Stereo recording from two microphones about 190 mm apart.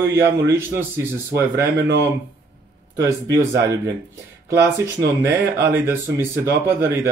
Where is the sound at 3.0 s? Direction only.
20° right (ahead or behind).